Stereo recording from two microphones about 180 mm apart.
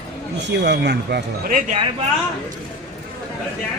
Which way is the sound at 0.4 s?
75° right (ahead or behind).